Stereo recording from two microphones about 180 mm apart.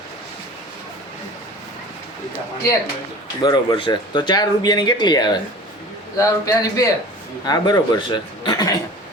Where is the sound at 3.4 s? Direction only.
25° left (ahead or behind).